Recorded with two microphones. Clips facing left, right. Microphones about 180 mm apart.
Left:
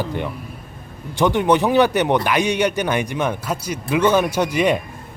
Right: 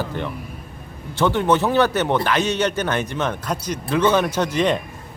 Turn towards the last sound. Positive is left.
turn(degrees=10)  # may be behind; listen again after turning